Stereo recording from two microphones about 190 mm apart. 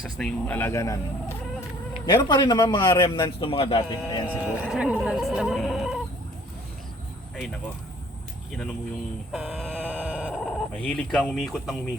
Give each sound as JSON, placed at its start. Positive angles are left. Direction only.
{"t": 0.2, "sound": "speech", "side_deg": 5}
{"t": 2.0, "sound": "a man's voice", "side_deg": 25}
{"t": 4.6, "sound": "a sound", "side_deg": -5}
{"t": 7.3, "sound": "speech", "side_deg": 0}
{"t": 9.3, "sound": "sheep", "side_deg": 0}
{"t": 10.2, "sound": "speech", "side_deg": 0}